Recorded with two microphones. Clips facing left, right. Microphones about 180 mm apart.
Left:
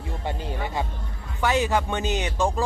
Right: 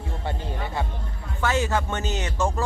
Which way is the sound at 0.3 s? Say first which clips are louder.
Left 1 dB; 15° left (ahead or behind).